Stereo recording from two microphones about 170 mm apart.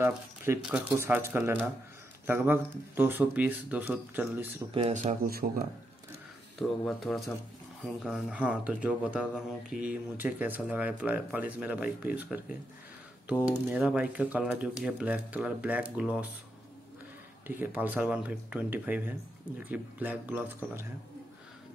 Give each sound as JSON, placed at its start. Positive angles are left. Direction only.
{"t": 0.6, "sound": "speech", "side_deg": -5}
{"t": 4.7, "sound": "speech", "side_deg": -35}
{"t": 5.2, "sound": "speech", "side_deg": -60}
{"t": 6.6, "sound": "speech", "side_deg": 0}
{"t": 17.5, "sound": "speech", "side_deg": -10}